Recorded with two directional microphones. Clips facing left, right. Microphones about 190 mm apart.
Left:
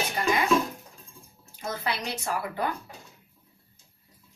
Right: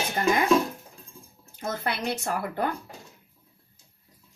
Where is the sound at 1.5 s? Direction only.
55° right (ahead or behind).